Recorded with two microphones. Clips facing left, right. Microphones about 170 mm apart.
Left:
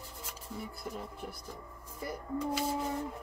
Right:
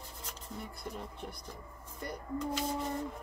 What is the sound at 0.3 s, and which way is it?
Speech, 5° left (ahead or behind).